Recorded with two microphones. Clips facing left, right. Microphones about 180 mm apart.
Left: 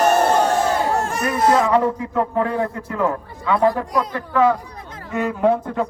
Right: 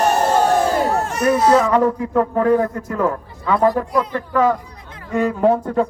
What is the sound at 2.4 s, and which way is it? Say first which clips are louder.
Speech: right 5 dB; 45° right (ahead or behind).